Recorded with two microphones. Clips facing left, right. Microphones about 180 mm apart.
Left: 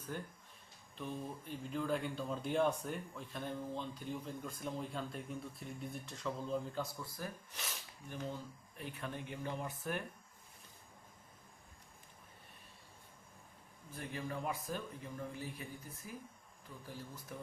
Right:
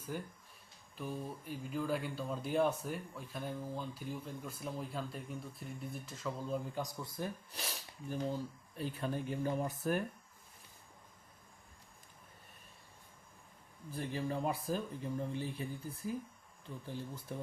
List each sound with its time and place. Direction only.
0.1 s speech: 10° right (ahead or behind)
6.7 s speech: 20° right (ahead or behind)
7.5 s speech: 35° right (ahead or behind)
13.9 s speech: 30° right (ahead or behind)